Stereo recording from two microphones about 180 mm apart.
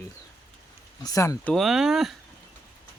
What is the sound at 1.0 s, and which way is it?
Speech, 20° left (ahead or behind).